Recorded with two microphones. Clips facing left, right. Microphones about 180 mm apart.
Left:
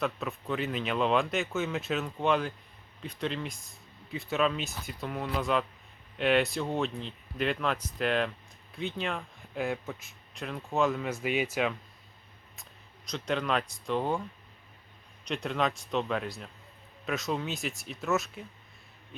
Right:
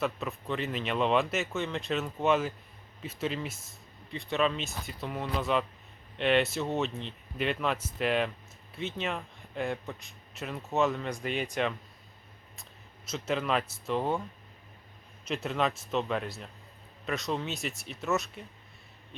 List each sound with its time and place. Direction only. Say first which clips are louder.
0.0 s a man's voice: even; centre (ahead or behind)
13.1 s a man's voice: even; 5° right (ahead or behind)
15.2 s a man's voice: even; 5° right (ahead or behind)